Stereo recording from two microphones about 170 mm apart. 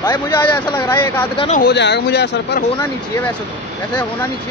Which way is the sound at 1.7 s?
80° left.